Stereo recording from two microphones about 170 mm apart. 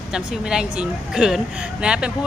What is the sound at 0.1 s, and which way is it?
A woman's voice, 5° right (ahead or behind).